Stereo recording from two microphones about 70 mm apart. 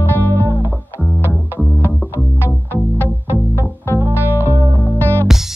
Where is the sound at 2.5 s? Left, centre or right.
Left.